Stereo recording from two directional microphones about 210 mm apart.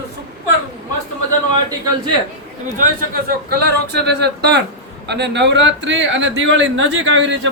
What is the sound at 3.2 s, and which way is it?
Speech, 50° right (ahead or behind).